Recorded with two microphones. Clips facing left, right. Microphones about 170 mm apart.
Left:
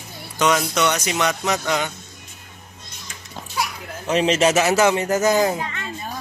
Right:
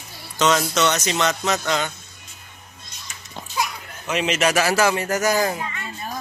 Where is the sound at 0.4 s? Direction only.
10° left (ahead or behind).